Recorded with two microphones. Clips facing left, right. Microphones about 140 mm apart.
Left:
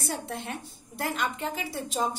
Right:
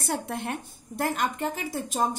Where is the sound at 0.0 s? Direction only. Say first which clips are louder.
Right 4 dB; 55° right (ahead or behind).